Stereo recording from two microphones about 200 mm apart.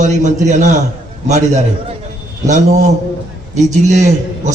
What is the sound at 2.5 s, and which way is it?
A man's voice, 35° right (ahead or behind).